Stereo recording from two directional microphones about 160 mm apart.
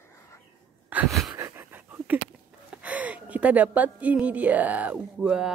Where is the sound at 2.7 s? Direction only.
10° right (ahead or behind).